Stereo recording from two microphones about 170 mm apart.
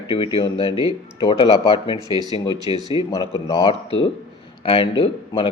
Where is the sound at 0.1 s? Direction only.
30° left (ahead or behind).